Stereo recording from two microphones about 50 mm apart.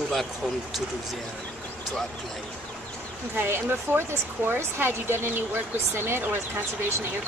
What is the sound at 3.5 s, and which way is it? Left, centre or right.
Speech, right.